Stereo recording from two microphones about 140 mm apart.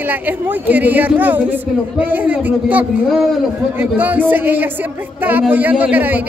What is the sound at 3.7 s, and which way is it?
A woman's voice, 15° right (ahead or behind).